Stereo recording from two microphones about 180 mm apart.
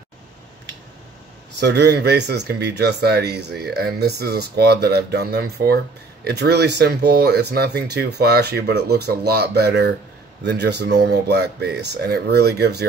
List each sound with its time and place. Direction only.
1.6 s speech: 65° right (ahead or behind)